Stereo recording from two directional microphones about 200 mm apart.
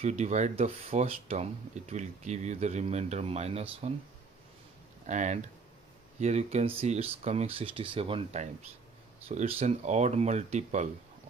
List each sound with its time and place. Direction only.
0.0 s speech: 35° right (ahead or behind)
5.0 s speech: 35° right (ahead or behind)